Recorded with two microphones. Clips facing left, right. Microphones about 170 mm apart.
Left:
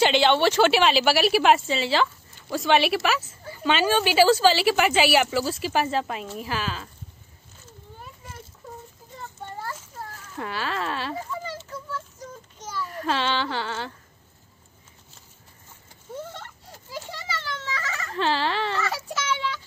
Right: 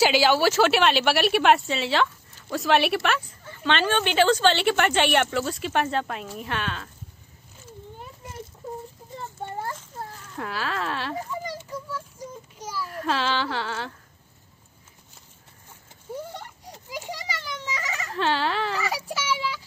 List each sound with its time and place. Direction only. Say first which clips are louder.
0.0 s a woman's voice: even; 5° right (ahead or behind)
10.3 s a woman's voice: even; centre (ahead or behind)
11.2 s a sound: right 1 dB; 15° right (ahead or behind)
16.2 s a sound: left 1 dB; 15° right (ahead or behind)
18.0 s speech: even; centre (ahead or behind)
18.8 s child singing: even; 10° right (ahead or behind)